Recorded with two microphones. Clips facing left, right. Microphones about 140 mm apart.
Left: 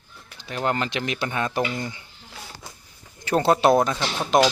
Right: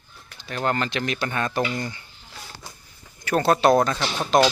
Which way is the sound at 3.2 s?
20° left (ahead or behind).